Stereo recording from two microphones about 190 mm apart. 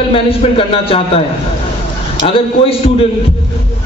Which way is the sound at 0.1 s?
30° left (ahead or behind).